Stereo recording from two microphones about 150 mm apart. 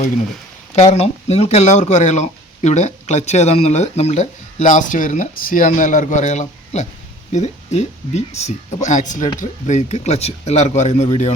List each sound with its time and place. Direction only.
0.8 s speech: 50° left (ahead or behind)